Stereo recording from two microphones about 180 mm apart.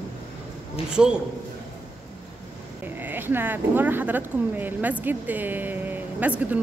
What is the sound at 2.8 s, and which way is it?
Speech, 10° right (ahead or behind).